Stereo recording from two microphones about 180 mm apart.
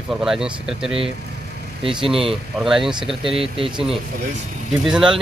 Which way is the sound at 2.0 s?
30° right (ahead or behind).